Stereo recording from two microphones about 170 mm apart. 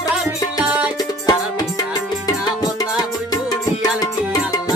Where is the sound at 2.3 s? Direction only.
20° left (ahead or behind).